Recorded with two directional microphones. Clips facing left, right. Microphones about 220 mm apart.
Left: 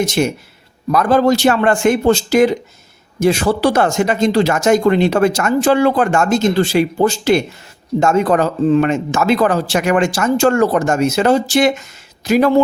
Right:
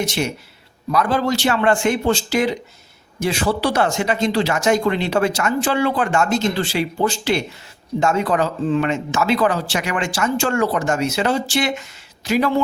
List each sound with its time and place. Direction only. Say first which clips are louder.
0.0 s speech: left 6 dB; 45° left (ahead or behind)